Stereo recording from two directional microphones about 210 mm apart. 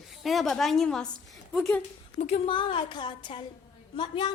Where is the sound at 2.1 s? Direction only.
30° left (ahead or behind).